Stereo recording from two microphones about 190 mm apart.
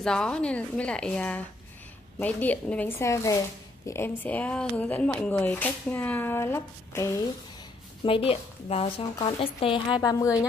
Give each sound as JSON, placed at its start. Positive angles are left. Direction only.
{"t": 0.0, "sound": "a woman's voice", "side_deg": 5}
{"t": 8.0, "sound": "speech", "side_deg": 30}